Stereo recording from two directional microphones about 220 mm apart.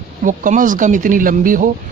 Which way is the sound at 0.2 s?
35° right (ahead or behind).